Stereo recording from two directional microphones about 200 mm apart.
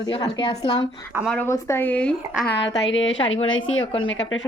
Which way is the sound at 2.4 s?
60° left (ahead or behind).